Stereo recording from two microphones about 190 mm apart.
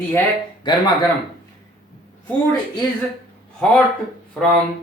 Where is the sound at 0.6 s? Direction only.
25° left (ahead or behind).